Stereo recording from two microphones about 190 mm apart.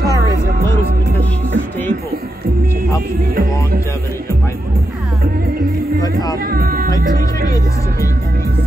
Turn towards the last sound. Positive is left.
turn(degrees=-50)  # may be behind; listen again after turning